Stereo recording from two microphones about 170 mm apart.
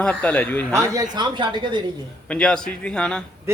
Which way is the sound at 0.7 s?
15° right (ahead or behind).